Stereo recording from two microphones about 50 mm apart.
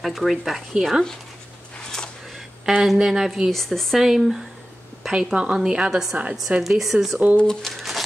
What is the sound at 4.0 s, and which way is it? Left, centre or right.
Speech, centre.